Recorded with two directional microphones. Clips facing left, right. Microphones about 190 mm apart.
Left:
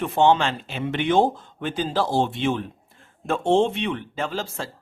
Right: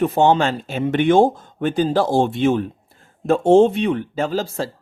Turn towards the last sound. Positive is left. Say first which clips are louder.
# right 7 dB
turn(degrees=-40)  # may be behind; listen again after turning